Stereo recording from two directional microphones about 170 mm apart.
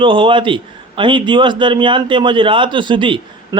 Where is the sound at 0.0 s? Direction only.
30° right (ahead or behind).